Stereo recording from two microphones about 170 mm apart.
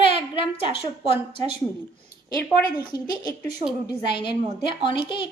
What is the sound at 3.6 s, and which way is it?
Speech, 35° right (ahead or behind).